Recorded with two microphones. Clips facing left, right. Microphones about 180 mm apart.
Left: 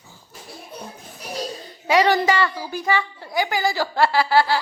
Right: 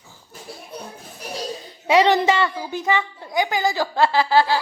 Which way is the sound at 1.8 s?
25° right (ahead or behind).